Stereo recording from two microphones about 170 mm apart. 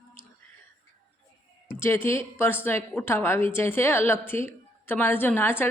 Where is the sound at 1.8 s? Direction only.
15° left (ahead or behind).